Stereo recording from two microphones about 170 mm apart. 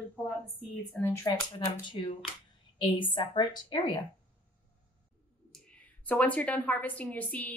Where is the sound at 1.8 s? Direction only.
25° left (ahead or behind).